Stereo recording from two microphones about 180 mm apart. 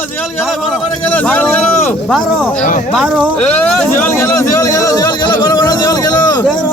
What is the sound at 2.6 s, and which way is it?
Speech, 45° left (ahead or behind).